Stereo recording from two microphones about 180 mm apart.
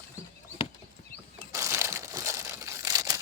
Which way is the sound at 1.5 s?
15° right (ahead or behind).